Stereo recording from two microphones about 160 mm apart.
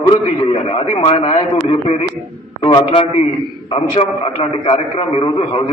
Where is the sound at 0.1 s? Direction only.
35° left (ahead or behind).